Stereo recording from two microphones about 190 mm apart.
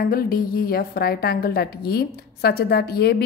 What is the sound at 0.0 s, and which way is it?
A woman's voice, 50° left (ahead or behind).